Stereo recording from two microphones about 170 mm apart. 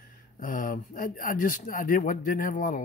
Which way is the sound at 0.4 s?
50° left (ahead or behind).